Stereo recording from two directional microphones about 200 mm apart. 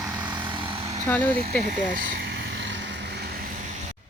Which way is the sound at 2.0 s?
60° right (ahead or behind).